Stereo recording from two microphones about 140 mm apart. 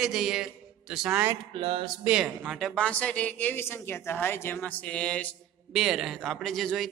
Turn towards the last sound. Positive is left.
turn(degrees=0)  # may be behind; listen again after turning